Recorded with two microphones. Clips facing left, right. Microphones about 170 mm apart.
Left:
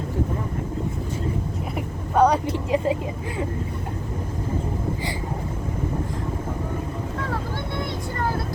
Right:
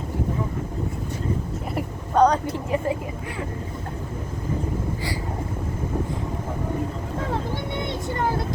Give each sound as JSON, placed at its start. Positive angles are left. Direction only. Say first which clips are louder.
{"t": 1.7, "sound": "vehicle", "louder": "right 1 dB", "side_deg": 10}
{"t": 2.5, "sound": "vehicle", "louder": "left 2 dB", "side_deg": 20}